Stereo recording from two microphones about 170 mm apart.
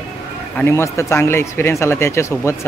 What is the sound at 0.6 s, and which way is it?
Speech, 15° left (ahead or behind).